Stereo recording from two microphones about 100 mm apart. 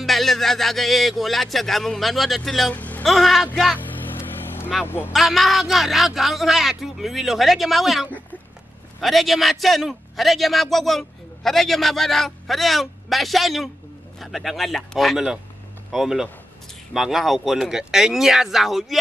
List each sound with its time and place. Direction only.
0.0 s a man's voice: centre (ahead or behind)
2.7 s music: 15° left (ahead or behind)
3.1 s a man's voice: centre (ahead or behind)
3.8 s vehicle: 20° left (ahead or behind)
4.8 s speech: 20° left (ahead or behind)
5.1 s a man's voice: centre (ahead or behind)